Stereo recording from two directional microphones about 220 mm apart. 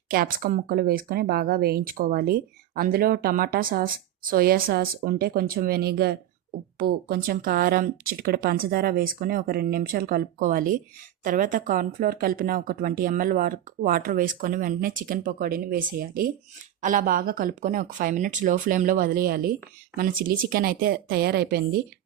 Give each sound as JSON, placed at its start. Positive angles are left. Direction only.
{"t": 0.1, "sound": "speech", "side_deg": -40}